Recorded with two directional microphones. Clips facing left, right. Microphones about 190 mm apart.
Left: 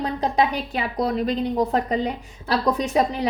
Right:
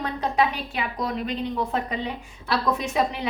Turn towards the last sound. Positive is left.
turn(degrees=35)  # may be behind; listen again after turning